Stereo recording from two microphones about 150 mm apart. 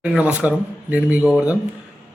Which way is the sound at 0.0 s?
5° right (ahead or behind).